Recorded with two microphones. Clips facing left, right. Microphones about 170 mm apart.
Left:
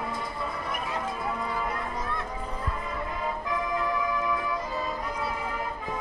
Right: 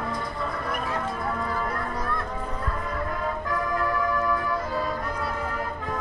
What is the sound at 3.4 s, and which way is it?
Music, 20° left (ahead or behind).